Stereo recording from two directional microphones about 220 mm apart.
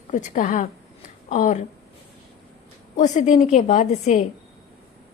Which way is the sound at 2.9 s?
35° left (ahead or behind).